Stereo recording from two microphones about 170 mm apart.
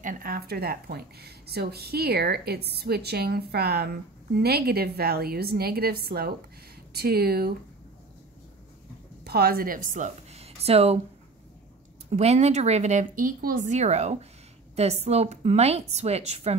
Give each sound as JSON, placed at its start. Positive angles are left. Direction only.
{"t": 0.0, "sound": "a woman's voice", "side_deg": -55}
{"t": 9.2, "sound": "a woman's voice", "side_deg": -65}
{"t": 12.1, "sound": "speech", "side_deg": -40}